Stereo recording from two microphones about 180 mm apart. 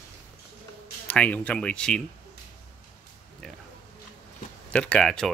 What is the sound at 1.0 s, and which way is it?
Speech, 10° left (ahead or behind).